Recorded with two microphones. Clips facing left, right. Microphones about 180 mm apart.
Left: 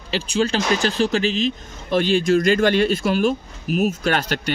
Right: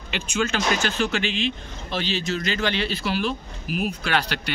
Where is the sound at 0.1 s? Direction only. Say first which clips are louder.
Left 5 dB; 35° left (ahead or behind).